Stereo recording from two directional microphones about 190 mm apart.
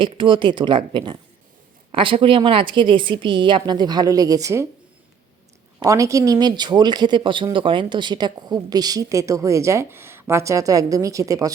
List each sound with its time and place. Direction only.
0.0 s a woman's voice: 25° right (ahead or behind)
5.8 s speech: 15° right (ahead or behind)